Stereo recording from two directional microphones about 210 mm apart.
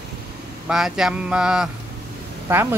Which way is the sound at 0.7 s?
Centre (ahead or behind).